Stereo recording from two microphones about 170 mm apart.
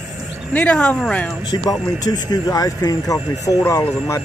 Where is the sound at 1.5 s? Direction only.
20° left (ahead or behind).